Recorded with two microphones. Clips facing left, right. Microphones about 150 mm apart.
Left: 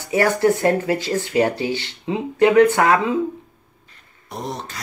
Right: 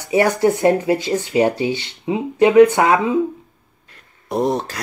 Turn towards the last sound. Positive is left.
turn(degrees=-60)  # may be behind; listen again after turning